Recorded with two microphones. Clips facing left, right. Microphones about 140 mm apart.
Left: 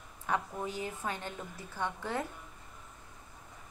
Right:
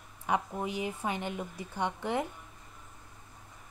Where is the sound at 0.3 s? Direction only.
15° right (ahead or behind).